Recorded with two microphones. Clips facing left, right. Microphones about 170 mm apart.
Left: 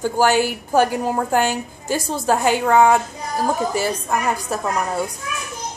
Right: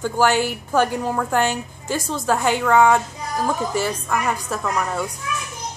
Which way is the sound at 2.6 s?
35° left (ahead or behind).